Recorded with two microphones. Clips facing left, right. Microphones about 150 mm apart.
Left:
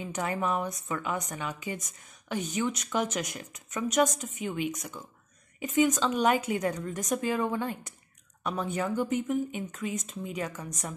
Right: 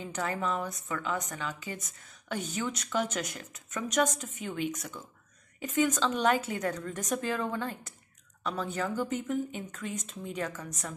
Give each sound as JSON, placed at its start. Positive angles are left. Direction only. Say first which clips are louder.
{"t": 0.1, "sound": "a woman's voice", "louder": "left 2 dB", "side_deg": 15}